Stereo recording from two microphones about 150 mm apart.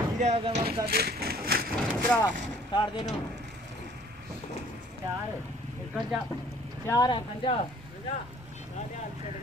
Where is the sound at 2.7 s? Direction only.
35° left (ahead or behind).